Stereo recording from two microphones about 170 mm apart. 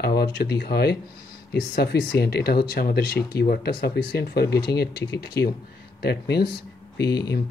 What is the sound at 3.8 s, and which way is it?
A man's voice, 75° left (ahead or behind).